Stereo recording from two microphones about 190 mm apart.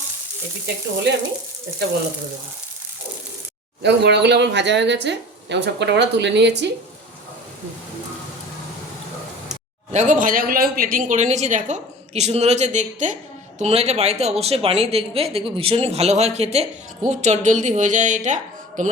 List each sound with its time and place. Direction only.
3.8 s speech: 65° right (ahead or behind)
9.9 s speech: 40° right (ahead or behind)